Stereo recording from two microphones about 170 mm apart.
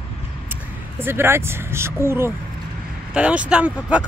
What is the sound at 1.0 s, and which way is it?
Speech, 15° right (ahead or behind).